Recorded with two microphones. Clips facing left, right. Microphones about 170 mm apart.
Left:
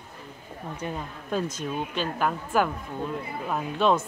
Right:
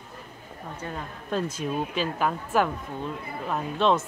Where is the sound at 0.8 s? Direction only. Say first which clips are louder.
Left 2 dB; 15° left (ahead or behind).